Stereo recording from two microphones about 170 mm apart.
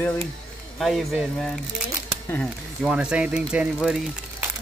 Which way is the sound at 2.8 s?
5° right (ahead or behind).